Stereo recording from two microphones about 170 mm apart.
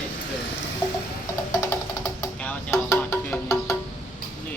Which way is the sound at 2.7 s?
15° left (ahead or behind).